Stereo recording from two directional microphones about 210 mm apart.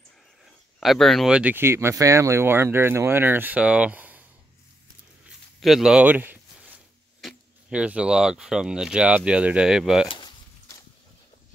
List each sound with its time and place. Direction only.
0.7 s speech: centre (ahead or behind)
5.6 s speech: centre (ahead or behind)
10.0 s a sound: 20° left (ahead or behind)